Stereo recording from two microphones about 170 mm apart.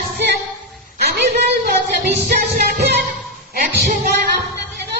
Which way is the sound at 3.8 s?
55° right (ahead or behind).